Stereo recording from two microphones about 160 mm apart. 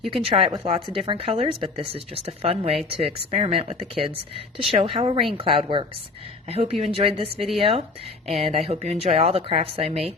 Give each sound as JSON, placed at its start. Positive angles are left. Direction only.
{"t": 0.1, "sound": "speech", "side_deg": -35}